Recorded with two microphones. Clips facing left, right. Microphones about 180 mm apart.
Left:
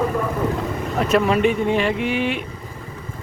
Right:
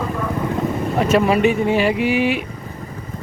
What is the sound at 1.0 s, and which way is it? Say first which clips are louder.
Speech: right 2 dB; centre (ahead or behind).